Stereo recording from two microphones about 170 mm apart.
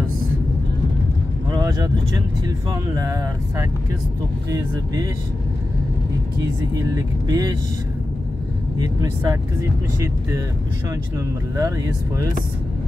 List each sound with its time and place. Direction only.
1.5 s speech: 20° right (ahead or behind)
6.7 s speech: 20° right (ahead or behind)
8.7 s speech: 20° right (ahead or behind)